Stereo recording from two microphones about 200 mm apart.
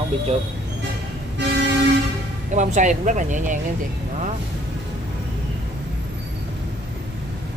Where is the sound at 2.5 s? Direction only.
40° right (ahead or behind).